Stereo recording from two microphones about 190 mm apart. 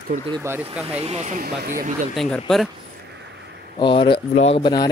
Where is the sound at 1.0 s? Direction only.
35° right (ahead or behind).